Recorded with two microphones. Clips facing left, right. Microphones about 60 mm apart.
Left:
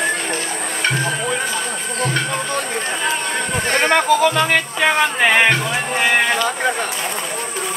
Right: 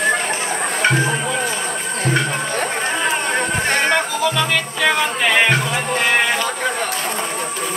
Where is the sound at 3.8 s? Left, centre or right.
Left.